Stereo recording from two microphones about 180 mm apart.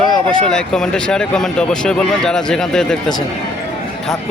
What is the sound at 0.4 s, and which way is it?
Speech, 5° left (ahead or behind).